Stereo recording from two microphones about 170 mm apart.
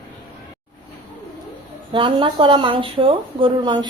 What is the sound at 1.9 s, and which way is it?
Speech, 30° right (ahead or behind).